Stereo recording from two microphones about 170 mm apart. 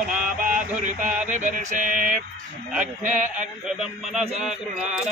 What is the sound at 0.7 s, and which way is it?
Mantra, 45° right (ahead or behind).